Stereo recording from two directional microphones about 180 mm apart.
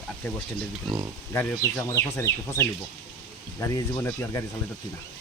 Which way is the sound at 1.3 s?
15° left (ahead or behind).